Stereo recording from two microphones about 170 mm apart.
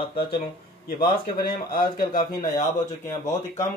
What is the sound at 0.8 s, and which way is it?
A man's voice, 60° left (ahead or behind).